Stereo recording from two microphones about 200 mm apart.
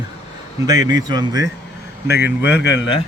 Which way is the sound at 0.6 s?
20° right (ahead or behind).